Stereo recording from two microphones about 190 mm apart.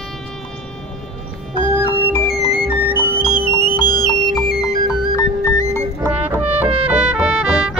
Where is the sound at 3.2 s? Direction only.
25° left (ahead or behind).